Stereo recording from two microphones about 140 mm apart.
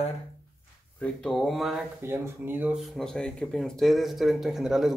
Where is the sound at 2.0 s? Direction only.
15° right (ahead or behind).